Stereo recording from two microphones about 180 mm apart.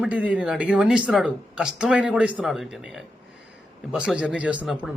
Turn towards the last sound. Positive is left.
turn(degrees=0)  # may be behind; listen again after turning